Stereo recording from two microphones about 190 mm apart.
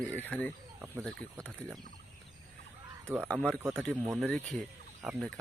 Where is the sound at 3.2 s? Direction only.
5° left (ahead or behind).